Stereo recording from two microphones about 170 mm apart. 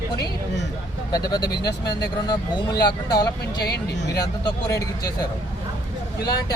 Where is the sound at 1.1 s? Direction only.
25° left (ahead or behind).